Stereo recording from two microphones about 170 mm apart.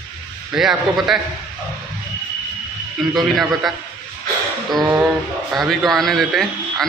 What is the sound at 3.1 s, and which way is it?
Speech, centre (ahead or behind).